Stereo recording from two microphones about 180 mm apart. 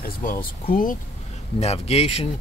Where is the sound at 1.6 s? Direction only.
35° left (ahead or behind).